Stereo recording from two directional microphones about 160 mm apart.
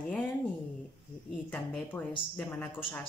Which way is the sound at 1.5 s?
10° left (ahead or behind).